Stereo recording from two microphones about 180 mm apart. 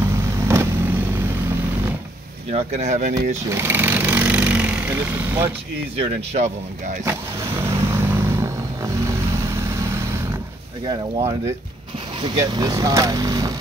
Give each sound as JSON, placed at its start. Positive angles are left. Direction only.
{"t": 0.0, "sound": "vehicle", "side_deg": -15}
{"t": 2.5, "sound": "speech", "side_deg": -40}
{"t": 3.4, "sound": "vehicle", "side_deg": -15}
{"t": 5.9, "sound": "speech", "side_deg": -40}
{"t": 7.6, "sound": "vehicle", "side_deg": -15}
{"t": 10.9, "sound": "speech", "side_deg": -30}